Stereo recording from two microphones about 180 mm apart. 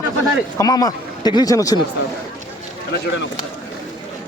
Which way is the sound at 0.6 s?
20° left (ahead or behind).